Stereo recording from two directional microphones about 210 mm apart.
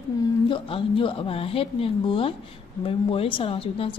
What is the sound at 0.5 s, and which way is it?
A woman's voice, 25° left (ahead or behind).